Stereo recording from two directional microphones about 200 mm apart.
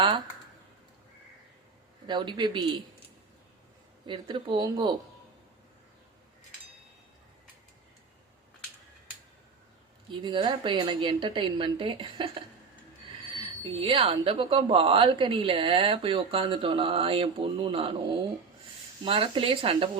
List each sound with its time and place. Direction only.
2.0 s speech: 20° right (ahead or behind)
4.0 s speech: 25° right (ahead or behind)
10.2 s speech: 25° right (ahead or behind)
19.0 s speech: 25° right (ahead or behind)